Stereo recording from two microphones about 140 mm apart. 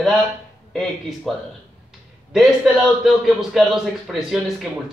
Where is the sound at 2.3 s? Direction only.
Centre (ahead or behind).